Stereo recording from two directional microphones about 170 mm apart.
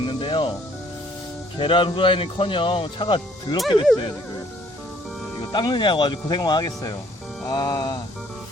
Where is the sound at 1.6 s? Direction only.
30° left (ahead or behind).